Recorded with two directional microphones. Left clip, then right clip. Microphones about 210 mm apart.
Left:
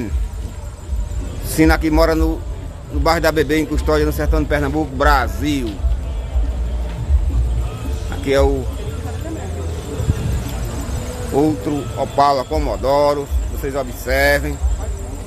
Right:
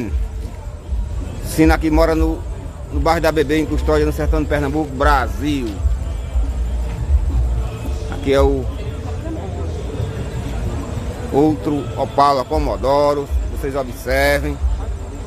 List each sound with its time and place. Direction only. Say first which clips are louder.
1.5 s a man's voice: even; centre (ahead or behind)
8.3 s speech: right 1 dB; 10° right (ahead or behind)
11.3 s speech: right 1 dB; 10° right (ahead or behind)